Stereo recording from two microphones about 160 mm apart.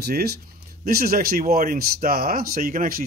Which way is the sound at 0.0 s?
75° right (ahead or behind).